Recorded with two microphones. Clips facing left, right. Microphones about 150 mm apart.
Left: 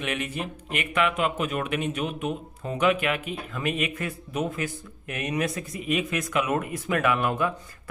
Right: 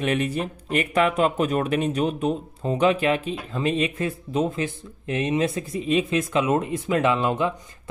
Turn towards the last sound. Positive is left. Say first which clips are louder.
# right 3 dB
turn(degrees=-20)  # may be behind; listen again after turning